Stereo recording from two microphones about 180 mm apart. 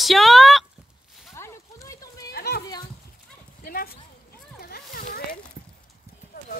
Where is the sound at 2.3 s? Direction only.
60° left (ahead or behind).